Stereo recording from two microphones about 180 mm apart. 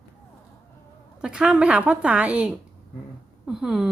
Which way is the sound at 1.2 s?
5° right (ahead or behind).